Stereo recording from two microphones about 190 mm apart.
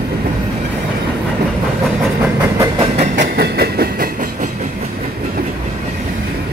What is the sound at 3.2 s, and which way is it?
Train, 55° right (ahead or behind).